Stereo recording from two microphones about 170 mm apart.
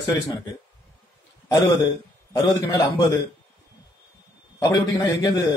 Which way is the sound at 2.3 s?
20° left (ahead or behind).